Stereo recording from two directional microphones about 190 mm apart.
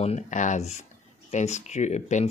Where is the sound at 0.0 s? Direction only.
40° left (ahead or behind).